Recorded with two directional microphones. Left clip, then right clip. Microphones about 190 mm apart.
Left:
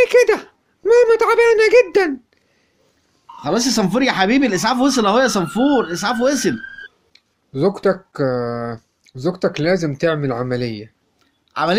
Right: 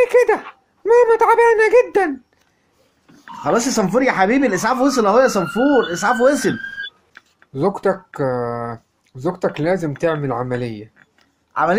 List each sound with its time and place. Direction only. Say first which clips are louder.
0.0 s a sound: left 1 dB; 25° left (ahead or behind)
0.8 s a child's voice: even; 20° left (ahead or behind)
3.4 s speech: right 1 dB; 10° left (ahead or behind)